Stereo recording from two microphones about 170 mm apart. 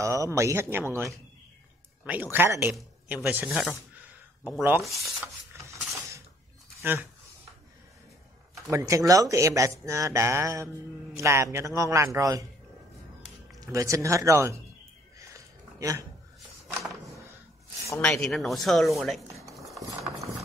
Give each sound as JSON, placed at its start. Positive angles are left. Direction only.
{"t": 0.0, "sound": "speech", "side_deg": -20}
{"t": 2.3, "sound": "speech", "side_deg": -15}
{"t": 6.8, "sound": "speech", "side_deg": -10}
{"t": 8.6, "sound": "speech", "side_deg": -15}
{"t": 13.6, "sound": "speech", "side_deg": -20}
{"t": 15.1, "sound": "a sound", "side_deg": -20}
{"t": 18.0, "sound": "speech", "side_deg": 5}
{"t": 19.5, "sound": "a sound", "side_deg": 0}